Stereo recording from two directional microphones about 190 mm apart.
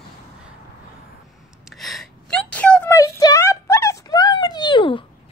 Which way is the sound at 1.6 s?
Centre (ahead or behind).